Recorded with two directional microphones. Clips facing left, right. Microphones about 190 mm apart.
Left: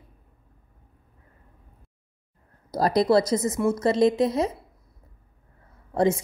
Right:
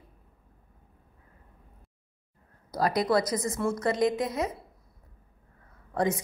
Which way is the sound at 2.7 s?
35° left (ahead or behind).